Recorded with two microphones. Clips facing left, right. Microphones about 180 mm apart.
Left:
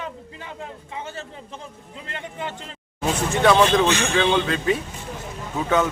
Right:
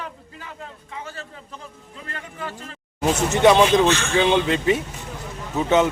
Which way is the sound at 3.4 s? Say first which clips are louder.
Right 2 dB; 15° right (ahead or behind).